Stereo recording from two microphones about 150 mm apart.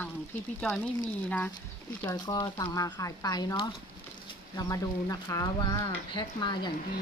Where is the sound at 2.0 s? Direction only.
25° left (ahead or behind).